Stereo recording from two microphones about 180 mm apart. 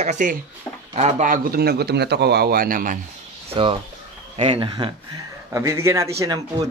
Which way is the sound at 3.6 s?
30° right (ahead or behind).